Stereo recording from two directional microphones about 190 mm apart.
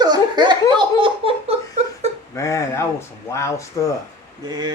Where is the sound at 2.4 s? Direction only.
15° left (ahead or behind).